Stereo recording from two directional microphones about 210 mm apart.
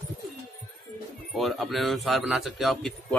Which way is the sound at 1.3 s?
Centre (ahead or behind).